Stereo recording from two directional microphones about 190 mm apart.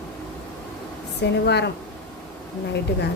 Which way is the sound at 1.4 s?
65° left (ahead or behind).